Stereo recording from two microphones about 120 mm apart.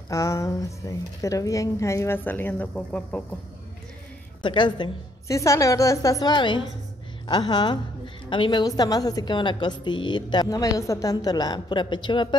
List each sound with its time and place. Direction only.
0.1 s a woman's voice: 25° left (ahead or behind); by 3.3 s 10° left (ahead or behind)
4.4 s a woman's voice: 40° left (ahead or behind)
5.3 s a woman's voice: 25° left (ahead or behind)
6.3 s a woman's voice: 40° left (ahead or behind)